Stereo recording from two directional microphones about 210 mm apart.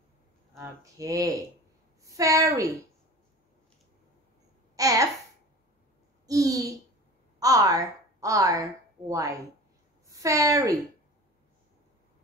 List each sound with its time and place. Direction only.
0.6 s speech: 15° right (ahead or behind)
4.7 s a child's voice: 15° right (ahead or behind)
6.2 s a sound: 15° right (ahead or behind)
7.3 s a woman's voice: 15° right (ahead or behind)